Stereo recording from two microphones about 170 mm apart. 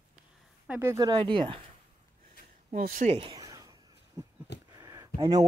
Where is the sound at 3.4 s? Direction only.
20° right (ahead or behind).